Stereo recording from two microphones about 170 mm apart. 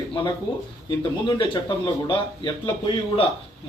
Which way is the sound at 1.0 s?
30° left (ahead or behind).